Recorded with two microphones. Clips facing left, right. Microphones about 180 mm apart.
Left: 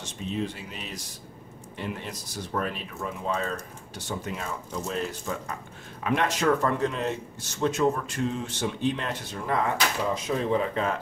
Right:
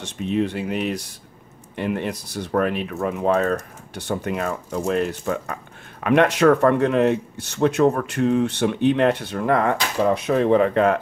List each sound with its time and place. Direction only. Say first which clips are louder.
0.0 s speech: right 8 dB; 65° right (ahead or behind)